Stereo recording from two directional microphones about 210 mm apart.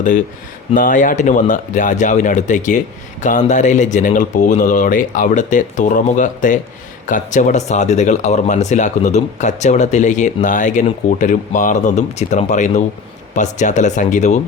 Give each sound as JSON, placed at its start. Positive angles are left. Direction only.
{"t": 0.7, "sound": "speech", "side_deg": 40}